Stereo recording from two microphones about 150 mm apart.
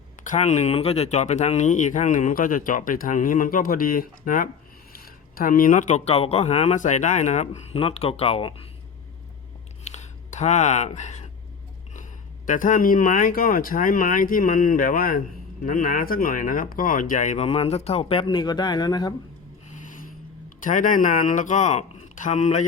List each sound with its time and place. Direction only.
0.3 s speech: 50° left (ahead or behind)
9.8 s a sound: 50° left (ahead or behind)
12.5 s speech: 60° left (ahead or behind); by 19.1 s 25° left (ahead or behind)
20.6 s speech: 60° left (ahead or behind)